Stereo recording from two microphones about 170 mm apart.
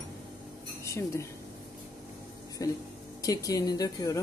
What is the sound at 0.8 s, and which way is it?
Speech, 15° left (ahead or behind).